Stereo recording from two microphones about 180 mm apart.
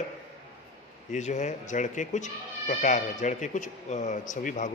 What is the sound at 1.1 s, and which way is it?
Speech, 40° left (ahead or behind).